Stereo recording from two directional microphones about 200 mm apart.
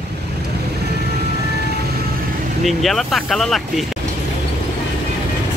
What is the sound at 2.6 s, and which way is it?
Speech, centre (ahead or behind).